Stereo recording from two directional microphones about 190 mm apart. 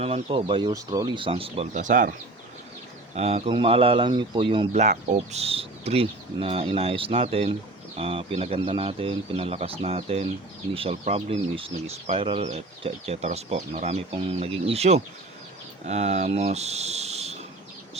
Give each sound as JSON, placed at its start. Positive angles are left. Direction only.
{"t": 0.0, "sound": "speech", "side_deg": -30}
{"t": 3.2, "sound": "speech", "side_deg": -35}